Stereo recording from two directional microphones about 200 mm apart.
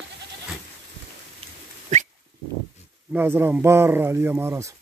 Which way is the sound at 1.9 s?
35° right (ahead or behind).